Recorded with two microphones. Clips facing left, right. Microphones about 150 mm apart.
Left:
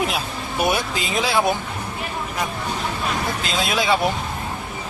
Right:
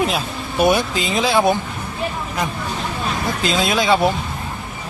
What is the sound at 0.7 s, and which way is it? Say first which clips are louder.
Speech: right 6 dB; 5° left (ahead or behind).